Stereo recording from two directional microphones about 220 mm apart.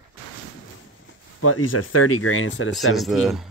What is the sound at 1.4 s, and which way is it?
Speech, 75° left (ahead or behind).